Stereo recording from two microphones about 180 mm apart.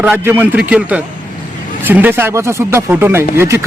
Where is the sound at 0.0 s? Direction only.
10° right (ahead or behind).